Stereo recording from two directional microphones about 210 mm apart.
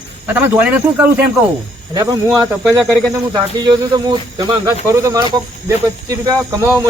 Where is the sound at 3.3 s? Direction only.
20° right (ahead or behind).